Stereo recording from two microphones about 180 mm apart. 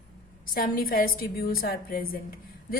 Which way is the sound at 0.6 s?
55° left (ahead or behind).